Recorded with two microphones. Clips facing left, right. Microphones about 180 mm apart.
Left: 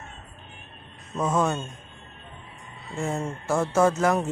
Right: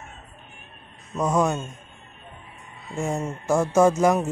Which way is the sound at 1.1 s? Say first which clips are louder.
Right 2 dB; 15° right (ahead or behind).